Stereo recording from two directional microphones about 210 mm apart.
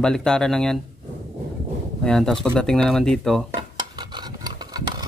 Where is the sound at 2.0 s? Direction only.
Centre (ahead or behind).